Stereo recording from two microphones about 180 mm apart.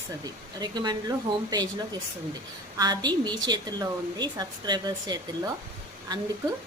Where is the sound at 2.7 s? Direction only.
20° right (ahead or behind).